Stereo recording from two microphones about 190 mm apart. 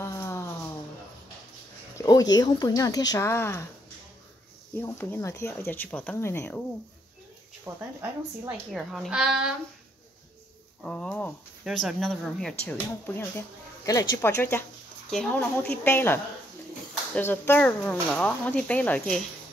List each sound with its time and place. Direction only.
0.0 s a sound: 15° left (ahead or behind)
2.0 s a sound: 20° left (ahead or behind)
2.3 s speech: 20° left (ahead or behind)
4.7 s speech: 10° left (ahead or behind)
7.6 s a woman's voice: 10° right (ahead or behind)
10.8 s a woman's voice: 5° left (ahead or behind)